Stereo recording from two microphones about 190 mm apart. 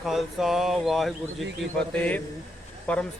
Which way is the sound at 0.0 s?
Centre (ahead or behind).